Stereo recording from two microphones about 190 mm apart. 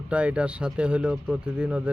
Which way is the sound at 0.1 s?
5° right (ahead or behind).